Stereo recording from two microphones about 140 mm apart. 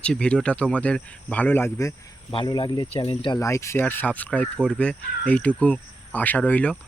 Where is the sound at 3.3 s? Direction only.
20° left (ahead or behind).